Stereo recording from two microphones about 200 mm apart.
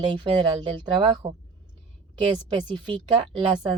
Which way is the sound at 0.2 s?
20° right (ahead or behind).